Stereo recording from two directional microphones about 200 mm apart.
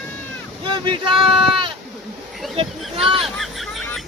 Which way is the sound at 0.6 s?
25° right (ahead or behind).